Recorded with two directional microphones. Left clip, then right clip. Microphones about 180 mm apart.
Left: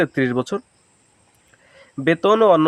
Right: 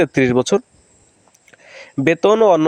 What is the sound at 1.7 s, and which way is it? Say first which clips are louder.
Speech: right 3 dB; 40° right (ahead or behind).